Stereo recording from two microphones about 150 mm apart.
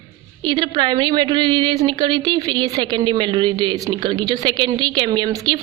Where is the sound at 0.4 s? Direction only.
30° right (ahead or behind).